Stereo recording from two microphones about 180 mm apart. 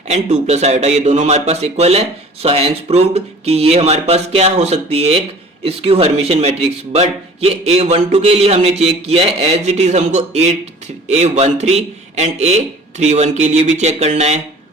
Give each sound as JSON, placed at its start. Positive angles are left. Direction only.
{"t": 0.1, "sound": "speech", "side_deg": -40}